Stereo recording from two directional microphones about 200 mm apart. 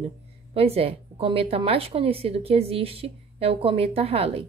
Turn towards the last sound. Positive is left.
turn(degrees=-30)  # may be behind; listen again after turning